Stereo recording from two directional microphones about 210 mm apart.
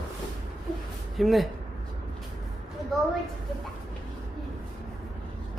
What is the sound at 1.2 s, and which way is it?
Speech, centre (ahead or behind).